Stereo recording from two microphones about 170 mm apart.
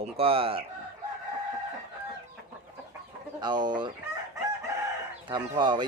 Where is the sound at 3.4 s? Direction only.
25° right (ahead or behind).